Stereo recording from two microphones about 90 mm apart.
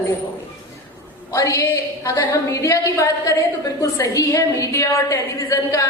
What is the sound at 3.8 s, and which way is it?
A woman's voice, 35° left (ahead or behind).